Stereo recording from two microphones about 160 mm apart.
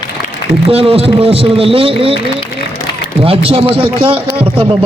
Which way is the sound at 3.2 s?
35° right (ahead or behind).